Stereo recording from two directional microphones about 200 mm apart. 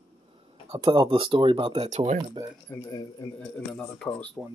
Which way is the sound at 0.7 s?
25° right (ahead or behind).